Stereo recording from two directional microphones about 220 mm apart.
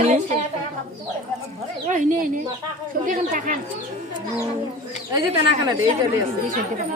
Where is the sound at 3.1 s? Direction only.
35° right (ahead or behind).